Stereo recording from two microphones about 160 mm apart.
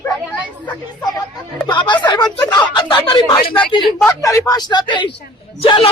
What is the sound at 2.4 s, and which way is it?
Speech, 10° left (ahead or behind).